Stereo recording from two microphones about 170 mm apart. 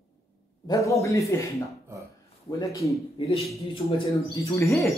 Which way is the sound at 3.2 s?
35° left (ahead or behind).